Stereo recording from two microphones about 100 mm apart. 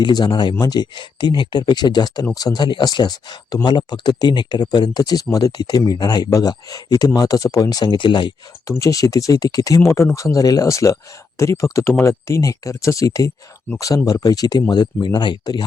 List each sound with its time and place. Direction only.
0.0 s speech: 45° left (ahead or behind)
7.9 s speech: 55° left (ahead or behind)
8.6 s speech: 30° left (ahead or behind); by 15.6 s 45° left (ahead or behind)